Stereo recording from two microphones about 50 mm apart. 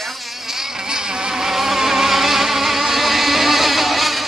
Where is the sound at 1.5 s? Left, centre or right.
Centre.